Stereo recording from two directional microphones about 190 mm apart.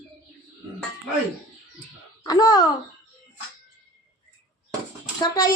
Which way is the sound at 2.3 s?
20° left (ahead or behind).